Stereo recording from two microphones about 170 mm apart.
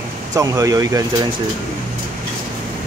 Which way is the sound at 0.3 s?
20° right (ahead or behind).